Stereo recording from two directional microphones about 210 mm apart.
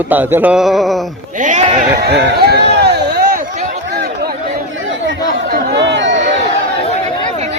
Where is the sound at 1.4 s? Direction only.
35° right (ahead or behind).